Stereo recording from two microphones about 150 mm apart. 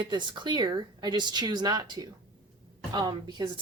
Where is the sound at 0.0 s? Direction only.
30° right (ahead or behind).